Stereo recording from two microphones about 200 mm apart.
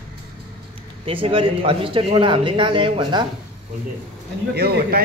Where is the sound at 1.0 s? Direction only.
30° right (ahead or behind).